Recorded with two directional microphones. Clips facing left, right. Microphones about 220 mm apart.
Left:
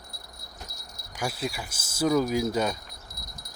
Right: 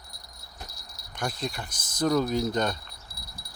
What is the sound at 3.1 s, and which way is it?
Wind chime, 30° right (ahead or behind).